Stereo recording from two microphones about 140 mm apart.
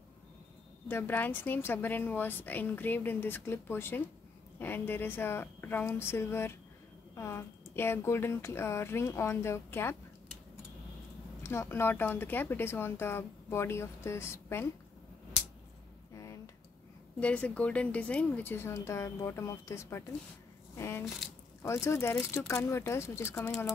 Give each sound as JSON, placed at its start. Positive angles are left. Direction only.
{"t": 0.8, "sound": "speech", "side_deg": 15}
{"t": 11.4, "sound": "speech", "side_deg": 20}
{"t": 17.2, "sound": "speech", "side_deg": 10}
{"t": 20.7, "sound": "a sound", "side_deg": 20}
{"t": 21.6, "sound": "speech", "side_deg": 20}